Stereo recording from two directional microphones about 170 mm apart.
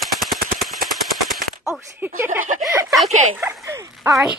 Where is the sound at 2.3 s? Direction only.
50° right (ahead or behind).